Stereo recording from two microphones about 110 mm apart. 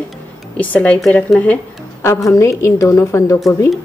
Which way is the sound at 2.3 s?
25° left (ahead or behind).